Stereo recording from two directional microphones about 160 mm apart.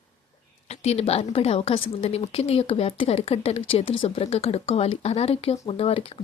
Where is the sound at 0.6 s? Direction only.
40° left (ahead or behind).